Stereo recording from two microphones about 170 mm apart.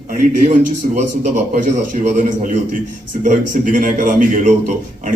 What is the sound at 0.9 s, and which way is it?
A man's voice, 45° right (ahead or behind).